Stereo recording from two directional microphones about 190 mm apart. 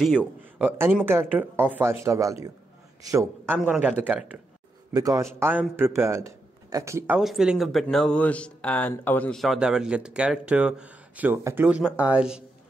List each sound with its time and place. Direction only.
0.0 s a man's voice: 5° right (ahead or behind)
4.9 s a man's voice: 20° right (ahead or behind)
7.2 s speech: centre (ahead or behind)